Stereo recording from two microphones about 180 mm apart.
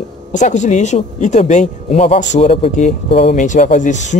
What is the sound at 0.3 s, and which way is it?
Speech, 40° left (ahead or behind).